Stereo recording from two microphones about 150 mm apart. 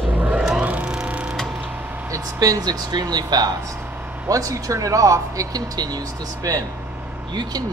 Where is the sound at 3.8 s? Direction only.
10° right (ahead or behind).